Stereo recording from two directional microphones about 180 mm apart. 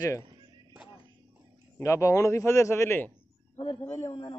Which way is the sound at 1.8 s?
15° left (ahead or behind).